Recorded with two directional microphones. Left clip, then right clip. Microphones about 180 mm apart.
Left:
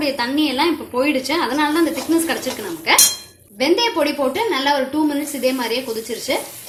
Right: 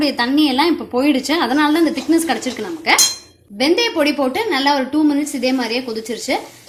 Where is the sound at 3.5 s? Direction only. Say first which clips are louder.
Right 1 dB; 55° right (ahead or behind).